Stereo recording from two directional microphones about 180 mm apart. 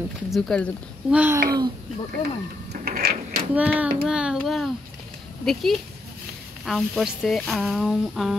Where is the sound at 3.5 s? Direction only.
10° right (ahead or behind).